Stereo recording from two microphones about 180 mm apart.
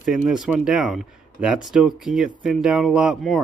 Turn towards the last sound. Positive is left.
turn(degrees=-5)  # may be behind; listen again after turning